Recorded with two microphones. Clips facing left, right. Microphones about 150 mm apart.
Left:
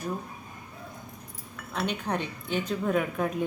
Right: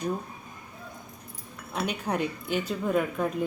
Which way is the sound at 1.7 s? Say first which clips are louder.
Even; 10° right (ahead or behind).